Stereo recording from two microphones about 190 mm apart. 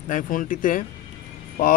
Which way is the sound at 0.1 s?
45° left (ahead or behind).